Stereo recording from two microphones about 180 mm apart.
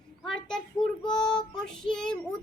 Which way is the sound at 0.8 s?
25° left (ahead or behind).